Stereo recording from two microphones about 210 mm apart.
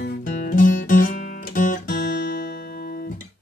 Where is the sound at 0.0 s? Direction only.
40° left (ahead or behind).